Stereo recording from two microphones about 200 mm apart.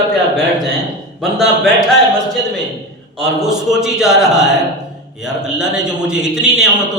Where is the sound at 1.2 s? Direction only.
Centre (ahead or behind).